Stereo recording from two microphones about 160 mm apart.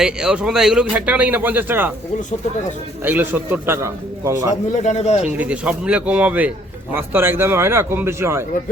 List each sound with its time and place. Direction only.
0.0 s speech: 5° right (ahead or behind)
3.0 s speech: 10° right (ahead or behind)
4.7 s speech: 50° left (ahead or behind)
5.2 s speech: 10° right (ahead or behind)